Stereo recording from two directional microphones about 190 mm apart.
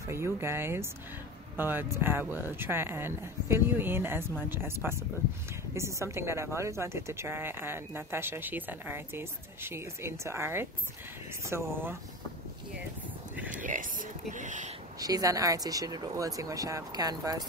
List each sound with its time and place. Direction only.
0.1 s a woman's voice: 15° right (ahead or behind)
13.6 s speech: 45° right (ahead or behind)
15.0 s speech: 20° right (ahead or behind)